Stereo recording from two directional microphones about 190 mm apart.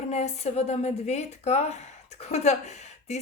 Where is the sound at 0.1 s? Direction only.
35° left (ahead or behind).